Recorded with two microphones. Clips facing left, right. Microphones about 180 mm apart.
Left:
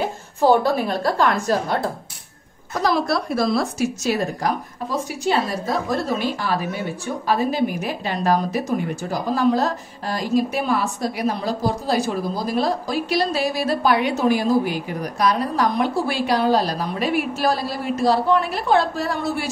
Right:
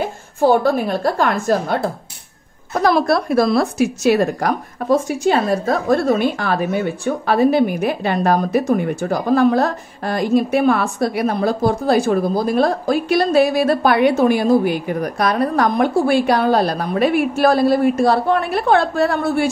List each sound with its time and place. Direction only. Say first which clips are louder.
0.4 s a woman's voice: right 2 dB; 50° right (ahead or behind)